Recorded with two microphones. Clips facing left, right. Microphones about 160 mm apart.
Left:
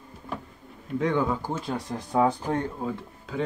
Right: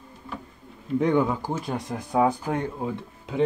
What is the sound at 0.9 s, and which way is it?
Speech, 20° right (ahead or behind).